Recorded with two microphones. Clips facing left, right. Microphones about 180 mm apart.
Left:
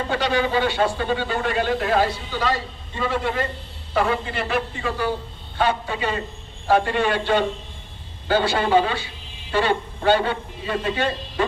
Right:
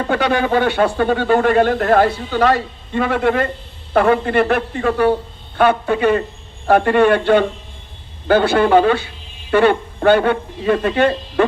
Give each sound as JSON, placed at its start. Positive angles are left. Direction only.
{"t": 0.0, "sound": "speech", "side_deg": -55}